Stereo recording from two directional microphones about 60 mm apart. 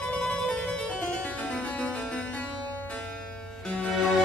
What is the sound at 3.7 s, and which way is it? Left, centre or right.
Music, centre.